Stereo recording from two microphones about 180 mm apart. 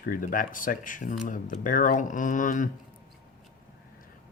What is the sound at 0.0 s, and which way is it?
Speech, 50° left (ahead or behind).